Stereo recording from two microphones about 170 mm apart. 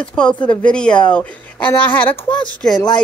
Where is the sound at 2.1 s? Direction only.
30° left (ahead or behind).